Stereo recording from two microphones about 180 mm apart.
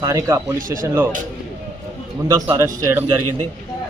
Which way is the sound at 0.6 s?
50° right (ahead or behind).